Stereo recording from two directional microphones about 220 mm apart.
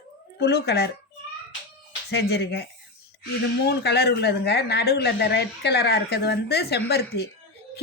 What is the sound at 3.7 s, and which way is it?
Speech, 45° left (ahead or behind).